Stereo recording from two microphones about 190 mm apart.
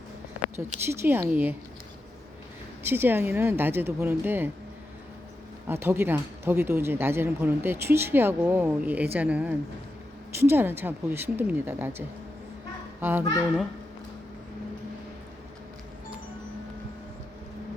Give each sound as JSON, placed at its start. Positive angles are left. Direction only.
{"t": 0.5, "sound": "speech", "side_deg": -10}
{"t": 2.8, "sound": "speech", "side_deg": -10}
{"t": 5.6, "sound": "a child's voice", "side_deg": -10}